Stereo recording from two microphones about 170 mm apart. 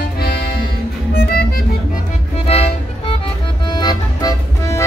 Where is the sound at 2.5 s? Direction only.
35° left (ahead or behind).